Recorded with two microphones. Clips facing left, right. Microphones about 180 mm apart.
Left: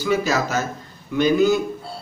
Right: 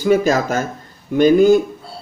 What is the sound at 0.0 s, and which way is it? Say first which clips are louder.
Speech: right 6 dB; 45° right (ahead or behind).